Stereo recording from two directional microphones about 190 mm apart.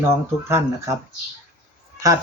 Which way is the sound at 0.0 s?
15° right (ahead or behind).